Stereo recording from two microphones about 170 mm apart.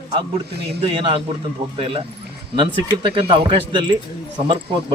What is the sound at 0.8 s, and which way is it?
A man's voice, 30° right (ahead or behind).